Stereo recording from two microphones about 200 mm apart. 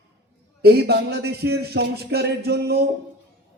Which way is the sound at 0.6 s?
55° right (ahead or behind).